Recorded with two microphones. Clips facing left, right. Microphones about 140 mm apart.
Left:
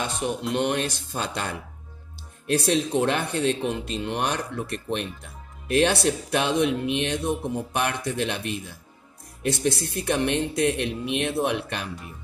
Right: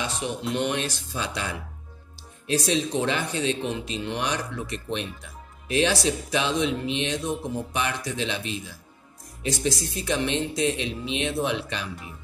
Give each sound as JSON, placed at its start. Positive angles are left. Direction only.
{"t": 0.0, "sound": "music", "side_deg": 50}
{"t": 2.4, "sound": "speech", "side_deg": 60}